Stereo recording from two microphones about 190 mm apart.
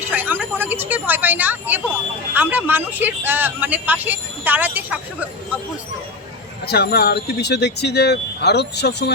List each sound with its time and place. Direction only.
0.1 s speech: 10° right (ahead or behind)
6.7 s speech: 55° left (ahead or behind)